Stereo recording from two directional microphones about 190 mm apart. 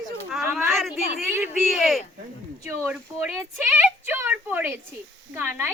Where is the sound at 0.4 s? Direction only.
10° right (ahead or behind).